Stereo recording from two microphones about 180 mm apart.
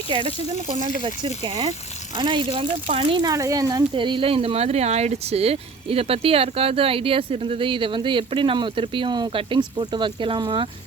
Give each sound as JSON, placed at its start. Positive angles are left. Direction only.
{"t": 1.0, "sound": "speech", "side_deg": -30}